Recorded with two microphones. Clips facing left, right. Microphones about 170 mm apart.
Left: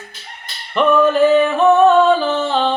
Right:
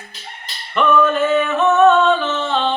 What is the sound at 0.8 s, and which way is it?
Singing, 35° left (ahead or behind).